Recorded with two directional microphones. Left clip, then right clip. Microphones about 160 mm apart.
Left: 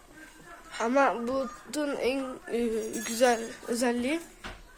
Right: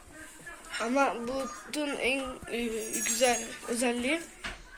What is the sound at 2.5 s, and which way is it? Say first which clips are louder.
Speech: left 4 dB; 40° left (ahead or behind).